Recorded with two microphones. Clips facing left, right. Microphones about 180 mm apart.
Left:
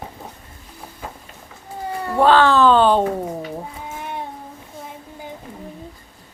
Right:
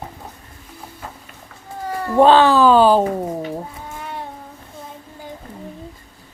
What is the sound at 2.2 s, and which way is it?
Speech, 15° right (ahead or behind).